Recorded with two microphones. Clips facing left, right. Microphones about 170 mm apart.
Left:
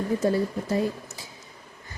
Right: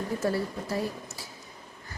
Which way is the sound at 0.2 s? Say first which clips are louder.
Left 5 dB; 20° left (ahead or behind).